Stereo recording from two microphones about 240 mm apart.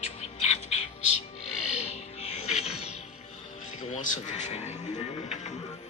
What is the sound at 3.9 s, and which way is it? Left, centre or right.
A man's voice, left.